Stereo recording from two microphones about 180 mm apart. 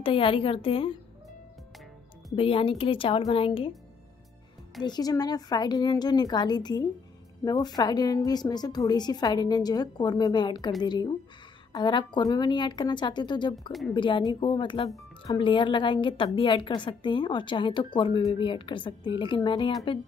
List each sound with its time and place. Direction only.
0.0 s a woman's voice: 30° left (ahead or behind)
2.3 s a woman's voice: 30° left (ahead or behind)
4.8 s a woman's voice: 20° left (ahead or behind)
13.7 s a woman's voice: centre (ahead or behind)
13.9 s a woman's voice: 25° left (ahead or behind)